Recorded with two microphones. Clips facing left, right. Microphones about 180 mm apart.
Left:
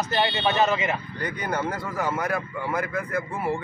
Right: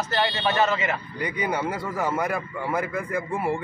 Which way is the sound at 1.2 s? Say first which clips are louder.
Right 3 dB; 10° right (ahead or behind).